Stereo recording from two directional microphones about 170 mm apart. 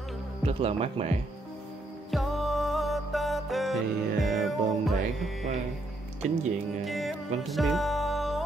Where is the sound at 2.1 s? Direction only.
Centre (ahead or behind).